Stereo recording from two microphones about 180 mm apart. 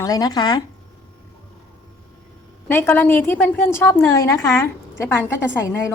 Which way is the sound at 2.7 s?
15° left (ahead or behind).